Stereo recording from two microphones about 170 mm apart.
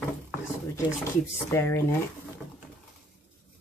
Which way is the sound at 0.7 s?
15° left (ahead or behind).